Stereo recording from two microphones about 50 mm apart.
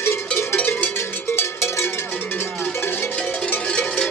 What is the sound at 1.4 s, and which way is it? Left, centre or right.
Cowbell, left.